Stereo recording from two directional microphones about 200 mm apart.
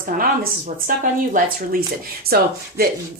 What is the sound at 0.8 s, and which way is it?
A woman's voice, 45° right (ahead or behind).